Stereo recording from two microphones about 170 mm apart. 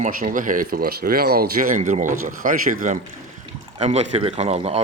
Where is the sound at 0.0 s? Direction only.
50° right (ahead or behind).